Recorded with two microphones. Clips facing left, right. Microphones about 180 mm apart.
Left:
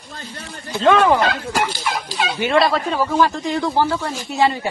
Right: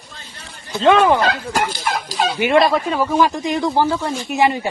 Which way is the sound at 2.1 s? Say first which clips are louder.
Right 5 dB; 40° right (ahead or behind).